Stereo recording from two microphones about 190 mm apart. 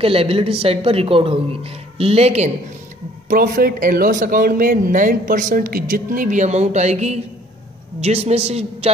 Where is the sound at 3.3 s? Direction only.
50° right (ahead or behind).